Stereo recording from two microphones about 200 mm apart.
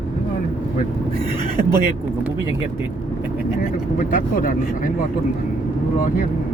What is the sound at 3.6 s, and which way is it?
Speech, 45° left (ahead or behind).